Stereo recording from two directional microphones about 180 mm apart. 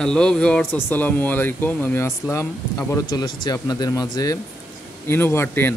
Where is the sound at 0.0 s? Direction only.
5° left (ahead or behind).